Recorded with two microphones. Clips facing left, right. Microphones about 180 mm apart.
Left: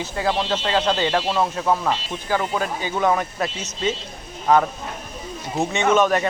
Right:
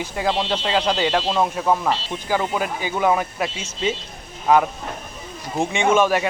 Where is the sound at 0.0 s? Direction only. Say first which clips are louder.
Even; 15° right (ahead or behind).